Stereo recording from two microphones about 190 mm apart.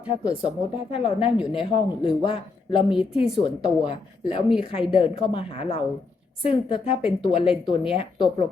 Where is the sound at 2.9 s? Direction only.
5° right (ahead or behind).